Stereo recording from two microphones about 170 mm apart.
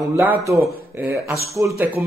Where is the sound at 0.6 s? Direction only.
15° right (ahead or behind).